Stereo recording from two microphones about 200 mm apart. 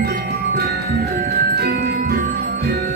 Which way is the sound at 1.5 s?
55° right (ahead or behind).